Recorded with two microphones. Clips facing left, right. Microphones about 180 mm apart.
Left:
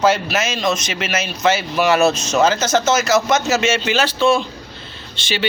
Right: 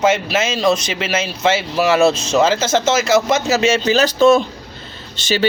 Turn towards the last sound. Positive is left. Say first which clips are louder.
# right 5 dB
turn(degrees=-45)  # may be behind; listen again after turning